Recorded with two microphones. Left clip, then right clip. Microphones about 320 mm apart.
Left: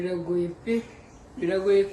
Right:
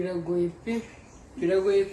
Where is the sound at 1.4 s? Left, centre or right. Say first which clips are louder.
Left 1 dB; centre.